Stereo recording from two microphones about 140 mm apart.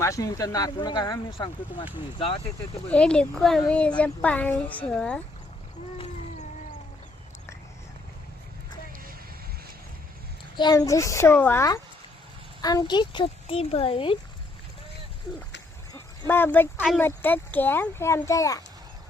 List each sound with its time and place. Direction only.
0.0 s speech: 25° left (ahead or behind); by 2.5 s 40° left (ahead or behind)
2.9 s a woman's voice: 5° left (ahead or behind)
10.6 s speech: 25° left (ahead or behind)
15.9 s a sound: 15° left (ahead or behind)
17.0 s a woman's voice: 15° left (ahead or behind)